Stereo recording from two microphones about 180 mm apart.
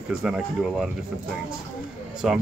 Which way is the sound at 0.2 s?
5° right (ahead or behind).